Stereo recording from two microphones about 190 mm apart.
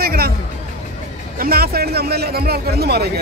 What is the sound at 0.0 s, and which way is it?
Music, 55° right (ahead or behind).